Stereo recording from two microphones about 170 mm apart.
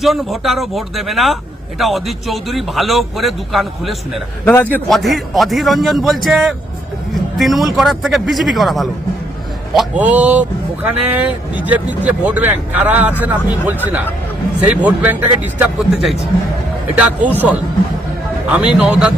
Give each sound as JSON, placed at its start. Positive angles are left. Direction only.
{"t": 0.0, "sound": "speech", "side_deg": 0}
{"t": 4.5, "sound": "a man's voice", "side_deg": 10}
{"t": 4.9, "sound": "speech", "side_deg": 0}
{"t": 18.4, "sound": "speech", "side_deg": -5}